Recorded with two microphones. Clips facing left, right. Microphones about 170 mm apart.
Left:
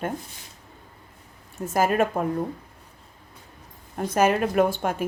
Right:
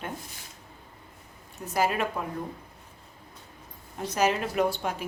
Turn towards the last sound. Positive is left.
turn(degrees=50)  # may be behind; listen again after turning